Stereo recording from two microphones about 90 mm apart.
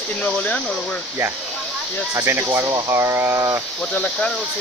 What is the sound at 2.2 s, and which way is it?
Speech, 25° right (ahead or behind).